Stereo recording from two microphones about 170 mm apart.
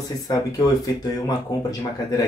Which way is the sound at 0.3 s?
20° left (ahead or behind).